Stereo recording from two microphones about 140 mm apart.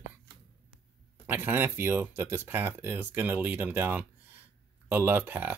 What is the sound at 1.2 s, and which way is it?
Speech, 15° right (ahead or behind).